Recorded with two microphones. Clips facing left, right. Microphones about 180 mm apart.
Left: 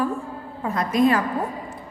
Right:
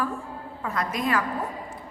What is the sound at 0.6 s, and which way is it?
Speech, 25° left (ahead or behind).